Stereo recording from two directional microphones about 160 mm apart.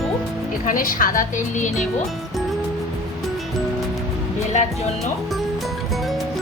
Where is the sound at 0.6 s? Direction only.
60° left (ahead or behind).